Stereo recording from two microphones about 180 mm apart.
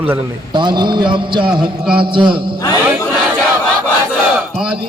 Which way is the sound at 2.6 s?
20° left (ahead or behind).